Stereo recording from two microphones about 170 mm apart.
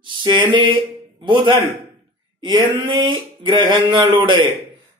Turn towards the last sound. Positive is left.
turn(degrees=-30)  # may be behind; listen again after turning